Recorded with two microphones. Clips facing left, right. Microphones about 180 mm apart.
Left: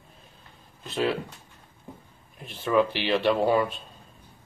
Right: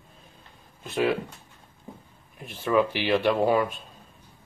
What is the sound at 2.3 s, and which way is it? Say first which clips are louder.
Speech: even; centre (ahead or behind).